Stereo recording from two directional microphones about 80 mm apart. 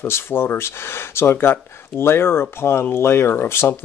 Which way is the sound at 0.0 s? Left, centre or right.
Left.